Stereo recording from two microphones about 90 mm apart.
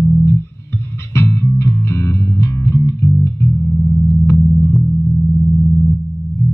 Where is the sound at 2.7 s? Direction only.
35° left (ahead or behind).